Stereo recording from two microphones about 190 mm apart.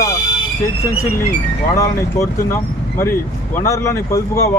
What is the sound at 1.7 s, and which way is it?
Speech, 15° left (ahead or behind).